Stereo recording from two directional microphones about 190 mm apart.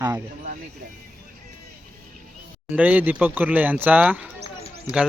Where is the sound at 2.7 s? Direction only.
10° right (ahead or behind).